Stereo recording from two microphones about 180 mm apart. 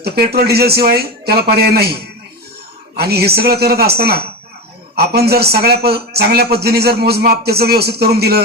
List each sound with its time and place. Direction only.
0.0 s a man's voice: 60° right (ahead or behind)